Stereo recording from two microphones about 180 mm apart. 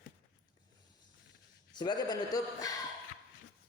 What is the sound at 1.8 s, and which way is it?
Speech, 25° left (ahead or behind).